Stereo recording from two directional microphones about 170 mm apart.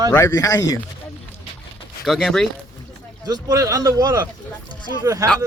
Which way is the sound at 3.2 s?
20° right (ahead or behind).